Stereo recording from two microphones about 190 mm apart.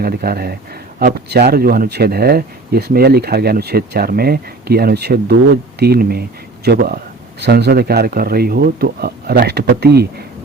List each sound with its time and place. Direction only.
0.0 s speech: 55° right (ahead or behind)